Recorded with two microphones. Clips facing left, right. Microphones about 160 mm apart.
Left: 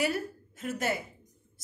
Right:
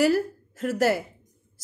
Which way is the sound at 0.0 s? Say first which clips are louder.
Right 9 dB; 80° right.